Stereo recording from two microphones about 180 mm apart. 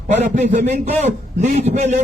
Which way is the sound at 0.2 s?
45° right (ahead or behind).